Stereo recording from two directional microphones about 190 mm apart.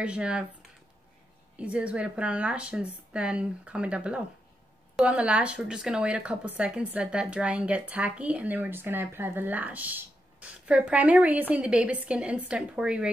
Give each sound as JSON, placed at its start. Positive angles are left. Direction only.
{"t": 0.0, "sound": "a woman's voice", "side_deg": -5}
{"t": 1.6, "sound": "a woman's voice", "side_deg": -5}